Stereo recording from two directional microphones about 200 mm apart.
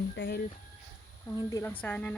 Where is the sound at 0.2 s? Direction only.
55° left (ahead or behind).